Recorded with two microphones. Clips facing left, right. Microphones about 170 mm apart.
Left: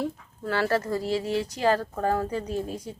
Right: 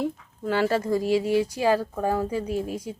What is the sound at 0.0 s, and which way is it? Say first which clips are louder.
Speech: right 2 dB; 15° right (ahead or behind).